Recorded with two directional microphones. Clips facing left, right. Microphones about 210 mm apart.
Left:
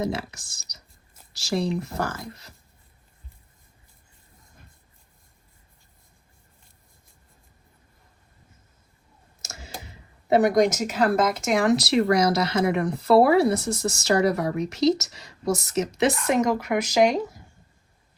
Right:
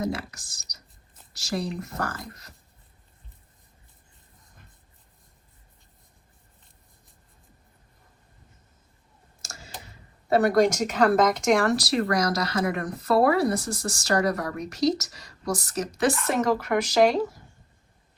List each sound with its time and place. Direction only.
0.0 s speech: 25° left (ahead or behind)
9.4 s clicking: 20° left (ahead or behind)
10.2 s speech: 20° left (ahead or behind); by 11.6 s centre (ahead or behind)
11.6 s speech: 20° left (ahead or behind)